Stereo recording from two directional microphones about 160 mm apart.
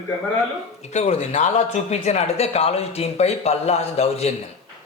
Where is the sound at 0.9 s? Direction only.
45° left (ahead or behind).